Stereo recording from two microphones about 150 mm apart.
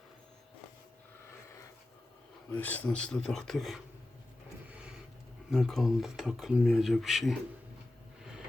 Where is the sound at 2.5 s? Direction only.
10° left (ahead or behind).